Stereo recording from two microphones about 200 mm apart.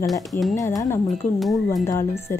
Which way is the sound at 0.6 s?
15° left (ahead or behind).